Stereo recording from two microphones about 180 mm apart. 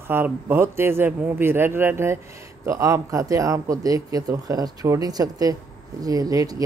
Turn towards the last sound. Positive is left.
turn(degrees=-20)  # may be behind; listen again after turning